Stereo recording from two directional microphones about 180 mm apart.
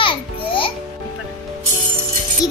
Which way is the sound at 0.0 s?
30° left (ahead or behind).